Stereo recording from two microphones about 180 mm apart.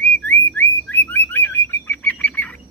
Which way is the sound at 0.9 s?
10° left (ahead or behind).